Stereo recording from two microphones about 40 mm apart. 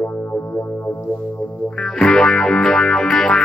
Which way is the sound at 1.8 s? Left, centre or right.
Centre.